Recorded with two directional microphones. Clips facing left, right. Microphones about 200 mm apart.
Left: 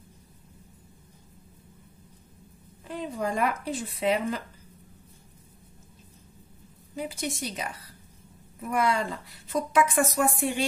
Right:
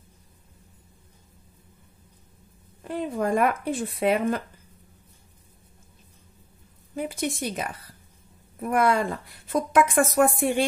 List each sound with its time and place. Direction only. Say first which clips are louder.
2.8 s a woman's voice: right 4 dB; 55° right (ahead or behind)
7.0 s a woman's voice: right 4 dB; 55° right (ahead or behind)